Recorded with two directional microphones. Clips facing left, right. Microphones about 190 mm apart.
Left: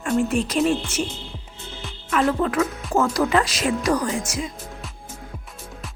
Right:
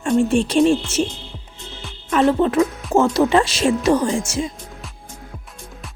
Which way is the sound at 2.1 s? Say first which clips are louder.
Right 5 dB; 25° right (ahead or behind).